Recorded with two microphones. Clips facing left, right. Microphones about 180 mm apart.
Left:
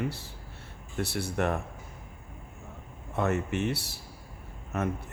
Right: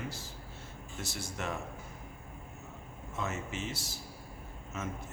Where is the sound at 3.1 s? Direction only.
60° left (ahead or behind).